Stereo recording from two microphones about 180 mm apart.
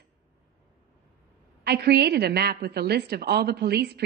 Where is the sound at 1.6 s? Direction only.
65° right (ahead or behind).